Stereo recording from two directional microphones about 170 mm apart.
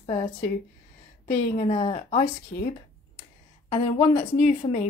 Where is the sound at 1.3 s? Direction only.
40° left (ahead or behind).